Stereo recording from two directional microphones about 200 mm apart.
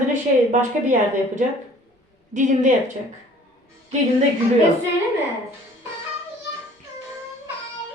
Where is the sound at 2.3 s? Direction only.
40° right (ahead or behind).